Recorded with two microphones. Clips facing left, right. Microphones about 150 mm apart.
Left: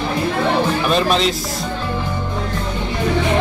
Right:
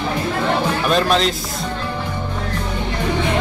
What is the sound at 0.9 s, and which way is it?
Speech, centre (ahead or behind).